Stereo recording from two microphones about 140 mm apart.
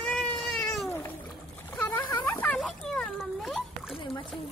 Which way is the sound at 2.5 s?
5° left (ahead or behind).